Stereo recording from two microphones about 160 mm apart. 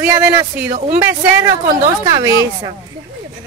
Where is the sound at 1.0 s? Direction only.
15° right (ahead or behind).